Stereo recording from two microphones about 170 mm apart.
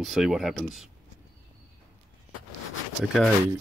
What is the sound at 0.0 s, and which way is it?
Speech, centre (ahead or behind).